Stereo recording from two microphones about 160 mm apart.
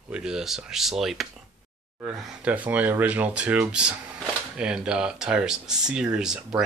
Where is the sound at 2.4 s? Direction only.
10° right (ahead or behind).